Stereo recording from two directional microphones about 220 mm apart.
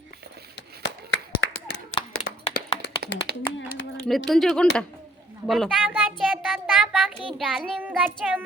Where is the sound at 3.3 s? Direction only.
45° right (ahead or behind).